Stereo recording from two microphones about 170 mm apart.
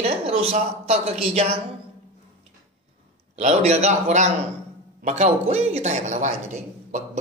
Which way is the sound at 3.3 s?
40° right (ahead or behind).